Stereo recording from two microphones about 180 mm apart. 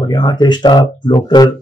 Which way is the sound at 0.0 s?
25° left (ahead or behind).